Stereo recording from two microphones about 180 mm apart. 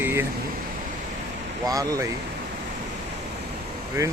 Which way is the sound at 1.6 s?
20° right (ahead or behind).